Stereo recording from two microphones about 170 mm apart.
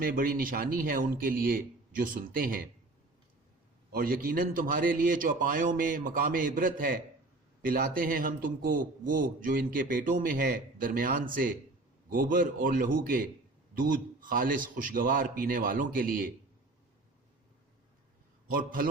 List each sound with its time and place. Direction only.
0.0 s a man's voice: 60° right (ahead or behind)
3.9 s a man's voice: 60° right (ahead or behind)
18.4 s a man's voice: 55° right (ahead or behind)